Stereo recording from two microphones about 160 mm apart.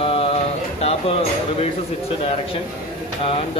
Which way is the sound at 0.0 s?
35° left (ahead or behind).